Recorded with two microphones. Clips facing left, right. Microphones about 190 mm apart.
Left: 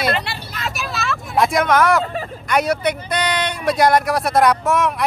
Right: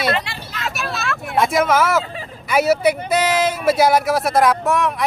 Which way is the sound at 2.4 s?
5° right (ahead or behind).